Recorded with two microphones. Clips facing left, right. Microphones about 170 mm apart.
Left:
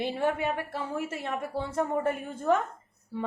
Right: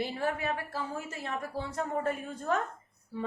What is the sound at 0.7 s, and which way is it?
Speech, 65° left (ahead or behind).